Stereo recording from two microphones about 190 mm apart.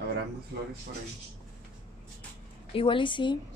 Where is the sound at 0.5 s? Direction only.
60° right (ahead or behind).